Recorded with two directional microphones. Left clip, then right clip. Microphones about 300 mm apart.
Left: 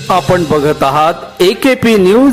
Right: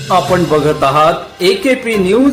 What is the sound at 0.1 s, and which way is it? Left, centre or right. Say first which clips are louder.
Speech: left 1 dB; left.